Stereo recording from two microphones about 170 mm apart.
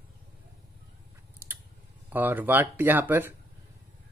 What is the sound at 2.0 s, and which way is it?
Speech, 10° right (ahead or behind).